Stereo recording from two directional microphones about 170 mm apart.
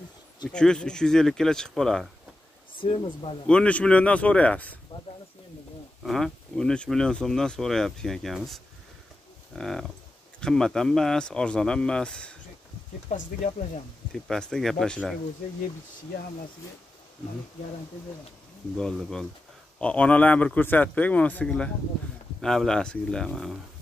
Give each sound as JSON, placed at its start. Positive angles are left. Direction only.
{"t": 0.5, "sound": "speech", "side_deg": 5}
{"t": 2.8, "sound": "speech", "side_deg": 30}
{"t": 3.4, "sound": "speech", "side_deg": 5}
{"t": 6.0, "sound": "speech", "side_deg": 0}
{"t": 9.6, "sound": "speech", "side_deg": 0}
{"t": 13.1, "sound": "speech", "side_deg": 50}
{"t": 14.1, "sound": "speech", "side_deg": 5}
{"t": 18.8, "sound": "speech", "side_deg": 5}